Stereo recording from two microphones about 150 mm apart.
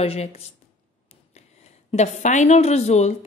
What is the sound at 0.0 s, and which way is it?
Speech, 45° left (ahead or behind).